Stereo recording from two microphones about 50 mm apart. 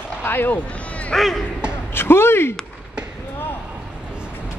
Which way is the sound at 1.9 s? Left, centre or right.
Left.